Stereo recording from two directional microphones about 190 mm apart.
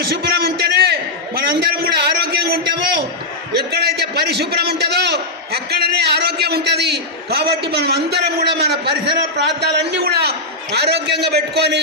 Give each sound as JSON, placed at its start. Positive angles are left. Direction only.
{"t": 0.0, "sound": "a sound", "side_deg": -55}
{"t": 1.4, "sound": "a man's voice", "side_deg": -55}
{"t": 3.5, "sound": "a man's voice", "side_deg": -60}